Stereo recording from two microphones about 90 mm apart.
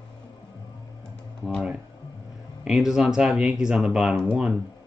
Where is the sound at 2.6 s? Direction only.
5° right (ahead or behind).